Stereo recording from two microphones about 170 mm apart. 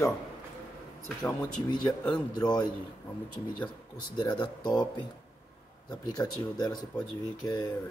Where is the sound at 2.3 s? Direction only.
25° left (ahead or behind).